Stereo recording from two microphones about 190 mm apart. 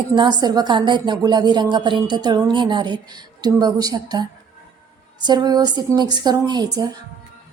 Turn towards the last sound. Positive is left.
turn(degrees=-20)  # may be behind; listen again after turning